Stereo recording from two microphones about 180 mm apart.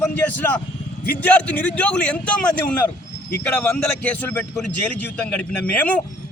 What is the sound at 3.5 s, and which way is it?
A man's voice, 10° left (ahead or behind).